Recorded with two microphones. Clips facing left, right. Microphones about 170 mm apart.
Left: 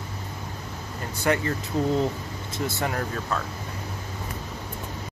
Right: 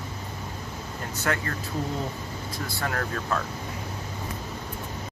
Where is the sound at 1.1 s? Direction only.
15° left (ahead or behind).